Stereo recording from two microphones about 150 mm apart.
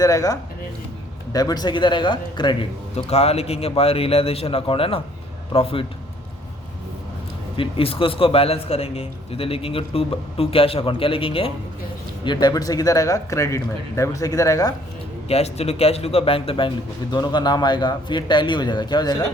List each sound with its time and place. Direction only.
0.0 s speech: 25° left (ahead or behind)
2.9 s a man's voice: 45° left (ahead or behind)
7.5 s a man's voice: 35° left (ahead or behind); by 14.7 s 20° left (ahead or behind)
15.3 s a man's voice: 45° left (ahead or behind); by 19.1 s 30° left (ahead or behind)